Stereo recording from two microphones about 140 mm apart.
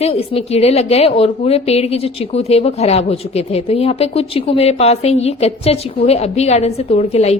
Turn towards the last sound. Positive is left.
turn(degrees=50)  # may be behind; listen again after turning